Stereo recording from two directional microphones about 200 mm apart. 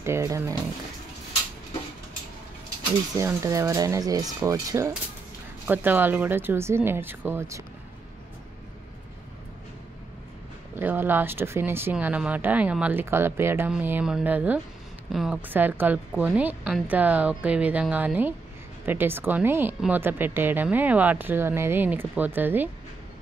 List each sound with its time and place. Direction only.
0.0 s speech: 15° right (ahead or behind)
3.2 s speech: 15° right (ahead or behind)
10.8 s speech: 10° right (ahead or behind)